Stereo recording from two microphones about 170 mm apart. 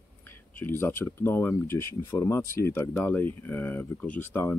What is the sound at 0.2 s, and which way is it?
Speech, 10° left (ahead or behind).